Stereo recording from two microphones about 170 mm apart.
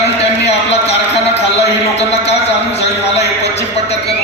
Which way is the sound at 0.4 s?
40° left (ahead or behind).